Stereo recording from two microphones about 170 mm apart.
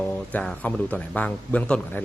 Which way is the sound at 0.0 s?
10° left (ahead or behind).